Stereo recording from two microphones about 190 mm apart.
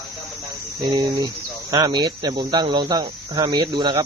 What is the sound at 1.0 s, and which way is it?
Speech, 20° right (ahead or behind).